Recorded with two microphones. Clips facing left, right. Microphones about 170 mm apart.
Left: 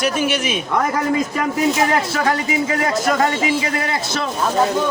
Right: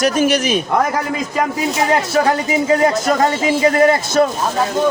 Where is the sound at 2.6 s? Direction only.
30° right (ahead or behind); by 4.3 s 45° right (ahead or behind).